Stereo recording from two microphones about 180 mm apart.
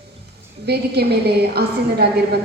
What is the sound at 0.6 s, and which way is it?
A woman's voice, 65° right (ahead or behind).